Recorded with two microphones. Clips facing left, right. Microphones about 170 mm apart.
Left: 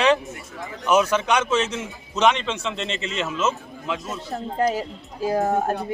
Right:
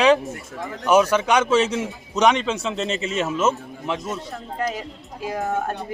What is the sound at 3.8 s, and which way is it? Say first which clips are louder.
Speech: right 2 dB; 20° right (ahead or behind).